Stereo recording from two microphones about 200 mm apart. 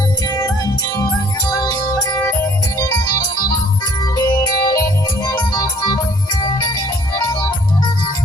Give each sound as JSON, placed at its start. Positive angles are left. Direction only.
{"t": 0.9, "sound": "music", "side_deg": 20}
{"t": 4.2, "sound": "music", "side_deg": 20}